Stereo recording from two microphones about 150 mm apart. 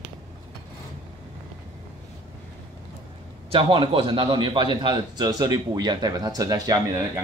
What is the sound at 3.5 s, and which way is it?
A man's voice, 35° right (ahead or behind).